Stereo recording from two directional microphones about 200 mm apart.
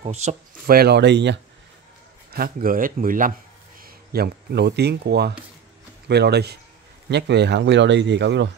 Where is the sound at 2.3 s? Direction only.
45° right (ahead or behind).